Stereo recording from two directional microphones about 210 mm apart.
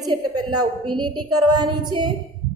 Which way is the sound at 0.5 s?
90° right.